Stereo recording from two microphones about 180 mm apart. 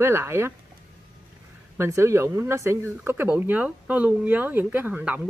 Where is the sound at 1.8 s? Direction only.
15° right (ahead or behind).